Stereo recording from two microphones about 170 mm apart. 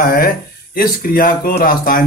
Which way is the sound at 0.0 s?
60° left (ahead or behind).